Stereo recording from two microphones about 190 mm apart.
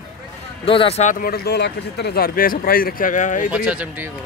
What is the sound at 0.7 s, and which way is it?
Speech, 30° left (ahead or behind).